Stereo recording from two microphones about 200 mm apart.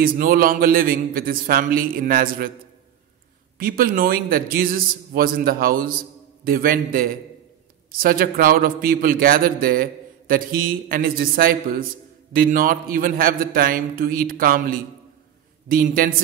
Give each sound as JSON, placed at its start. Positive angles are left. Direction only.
{"t": 0.0, "sound": "a man's voice", "side_deg": -45}
{"t": 3.5, "sound": "a man's voice", "side_deg": -45}